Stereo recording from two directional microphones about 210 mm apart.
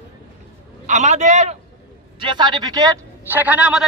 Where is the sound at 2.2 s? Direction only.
20° right (ahead or behind); by 3.8 s 5° right (ahead or behind).